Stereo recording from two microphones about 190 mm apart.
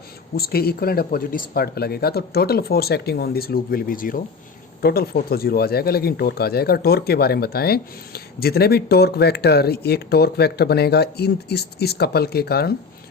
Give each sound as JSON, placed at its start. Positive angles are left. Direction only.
{"t": 0.3, "sound": "speech", "side_deg": 55}